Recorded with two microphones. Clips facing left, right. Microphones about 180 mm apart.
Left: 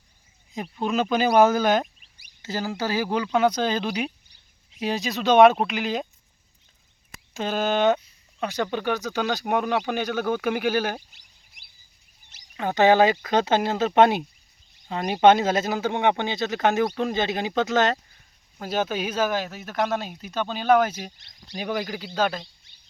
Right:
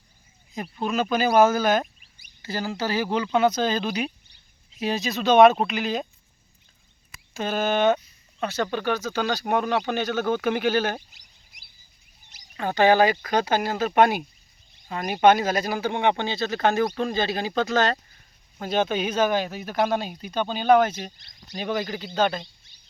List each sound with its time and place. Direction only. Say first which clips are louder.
0.5 s speech: left 1 dB; 5° right (ahead or behind)
1.5 s speech: left 1 dB; 15° left (ahead or behind)
7.3 s speech: even; 15° left (ahead or behind)
12.5 s speech: left 1 dB; 20° left (ahead or behind)
18.6 s speech: right 2 dB; 5° left (ahead or behind)